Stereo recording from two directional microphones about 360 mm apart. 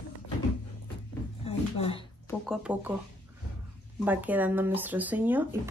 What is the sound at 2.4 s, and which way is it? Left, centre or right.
Speech, centre.